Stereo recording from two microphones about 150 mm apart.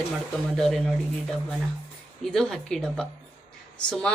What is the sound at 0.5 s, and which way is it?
A woman's voice, centre (ahead or behind).